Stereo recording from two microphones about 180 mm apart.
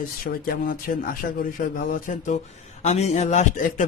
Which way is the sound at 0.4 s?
50° left (ahead or behind).